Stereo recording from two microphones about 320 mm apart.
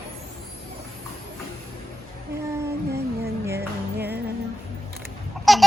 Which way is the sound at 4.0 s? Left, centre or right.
Right.